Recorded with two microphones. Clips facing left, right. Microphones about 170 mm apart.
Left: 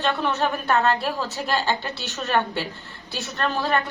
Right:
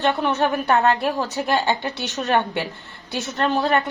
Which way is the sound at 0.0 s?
20° right (ahead or behind).